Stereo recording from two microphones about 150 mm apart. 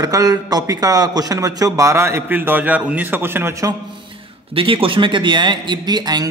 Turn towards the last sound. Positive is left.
turn(degrees=-25)  # may be behind; listen again after turning